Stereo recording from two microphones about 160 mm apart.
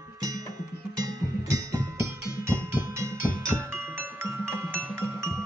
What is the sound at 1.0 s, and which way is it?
Music, 20° right (ahead or behind).